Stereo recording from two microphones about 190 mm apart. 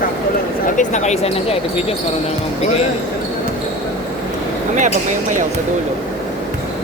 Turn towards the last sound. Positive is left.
turn(degrees=-40)  # may be behind; listen again after turning